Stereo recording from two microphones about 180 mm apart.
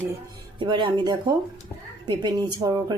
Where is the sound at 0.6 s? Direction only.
25° right (ahead or behind).